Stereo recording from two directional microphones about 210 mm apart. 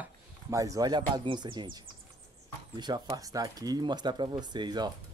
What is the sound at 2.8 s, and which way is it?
Speech, 20° right (ahead or behind).